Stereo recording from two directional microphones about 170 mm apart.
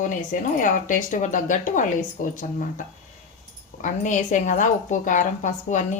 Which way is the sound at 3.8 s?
45° left (ahead or behind).